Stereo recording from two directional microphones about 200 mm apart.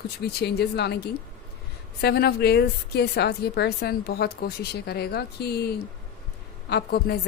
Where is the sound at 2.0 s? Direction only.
55° left (ahead or behind).